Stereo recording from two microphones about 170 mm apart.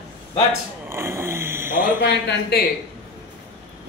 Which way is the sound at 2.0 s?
85° left.